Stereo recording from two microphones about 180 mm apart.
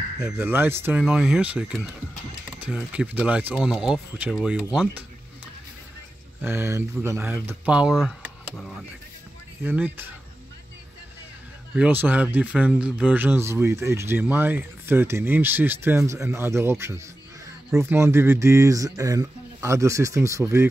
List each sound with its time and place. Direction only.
0.2 s speech: 10° right (ahead or behind)
6.4 s speech: 15° right (ahead or behind)
9.6 s speech: 10° right (ahead or behind)
11.7 s speech: 10° right (ahead or behind)